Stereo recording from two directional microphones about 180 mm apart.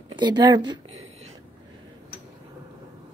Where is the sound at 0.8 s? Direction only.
90° right.